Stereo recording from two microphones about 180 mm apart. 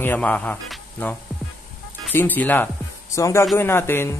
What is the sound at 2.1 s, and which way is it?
Music, 10° left (ahead or behind).